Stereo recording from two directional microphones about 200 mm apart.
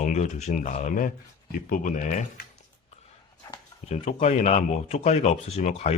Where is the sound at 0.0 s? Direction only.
35° left (ahead or behind).